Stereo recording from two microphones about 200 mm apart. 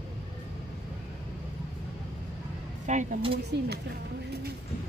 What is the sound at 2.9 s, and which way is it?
Speech, 40° right (ahead or behind).